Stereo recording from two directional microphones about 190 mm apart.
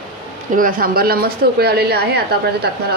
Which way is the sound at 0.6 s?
45° right (ahead or behind).